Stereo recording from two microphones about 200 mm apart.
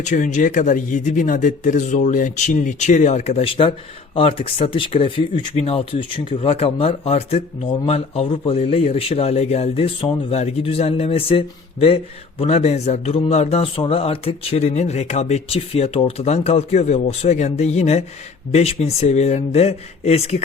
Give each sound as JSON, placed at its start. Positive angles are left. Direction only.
{"t": 0.0, "sound": "a man's voice", "side_deg": 40}